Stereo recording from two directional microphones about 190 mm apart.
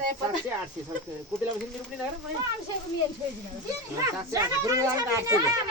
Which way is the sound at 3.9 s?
15° right (ahead or behind).